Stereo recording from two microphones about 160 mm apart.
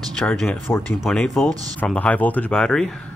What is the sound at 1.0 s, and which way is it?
Speech, 5° left (ahead or behind).